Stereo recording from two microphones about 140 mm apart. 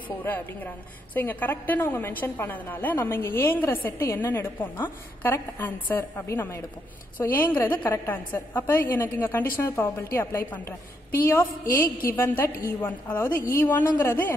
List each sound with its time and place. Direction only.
0.2 s a woman's voice: 15° left (ahead or behind)
12.1 s a woman's voice: 15° left (ahead or behind)